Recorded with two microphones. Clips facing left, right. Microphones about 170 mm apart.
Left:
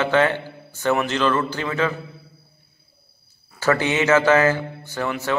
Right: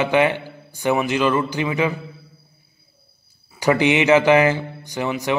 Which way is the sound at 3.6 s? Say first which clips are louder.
Right 3 dB; 15° right (ahead or behind).